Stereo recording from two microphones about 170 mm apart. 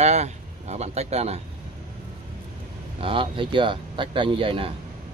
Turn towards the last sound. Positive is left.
turn(degrees=-30)  # may be behind; listen again after turning